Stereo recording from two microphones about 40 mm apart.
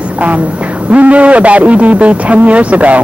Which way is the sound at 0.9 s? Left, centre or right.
Right.